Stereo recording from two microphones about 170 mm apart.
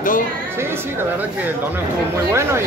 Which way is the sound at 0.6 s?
15° right (ahead or behind).